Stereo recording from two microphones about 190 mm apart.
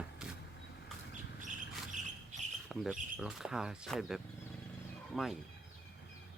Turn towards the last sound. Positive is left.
turn(degrees=0)  # may be behind; listen again after turning